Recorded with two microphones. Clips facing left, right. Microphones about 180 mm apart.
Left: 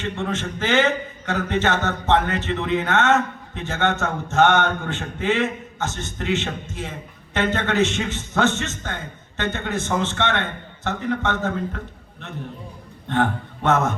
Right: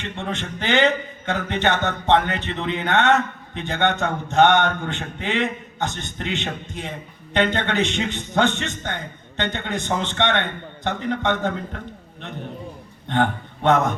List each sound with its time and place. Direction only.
0.0 s a man's voice: 20° right (ahead or behind)
13.1 s speech: 20° right (ahead or behind)